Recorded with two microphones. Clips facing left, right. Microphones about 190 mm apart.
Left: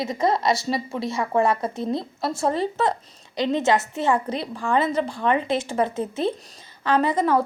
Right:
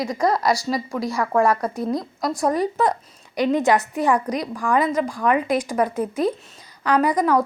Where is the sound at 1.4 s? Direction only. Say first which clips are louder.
Right 2 dB; centre (ahead or behind).